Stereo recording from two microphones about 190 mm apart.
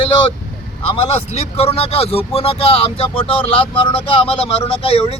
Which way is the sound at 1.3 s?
35° left (ahead or behind).